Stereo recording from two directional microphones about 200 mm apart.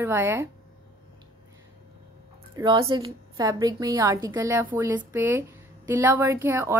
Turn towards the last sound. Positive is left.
turn(degrees=-10)  # may be behind; listen again after turning